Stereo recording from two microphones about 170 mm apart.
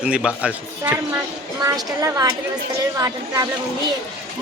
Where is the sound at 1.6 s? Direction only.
20° right (ahead or behind).